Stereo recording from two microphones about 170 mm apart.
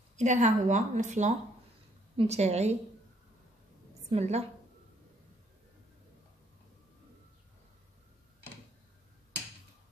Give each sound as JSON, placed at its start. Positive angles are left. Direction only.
{"t": 0.2, "sound": "a woman's voice", "side_deg": -45}
{"t": 4.1, "sound": "a woman's voice", "side_deg": -40}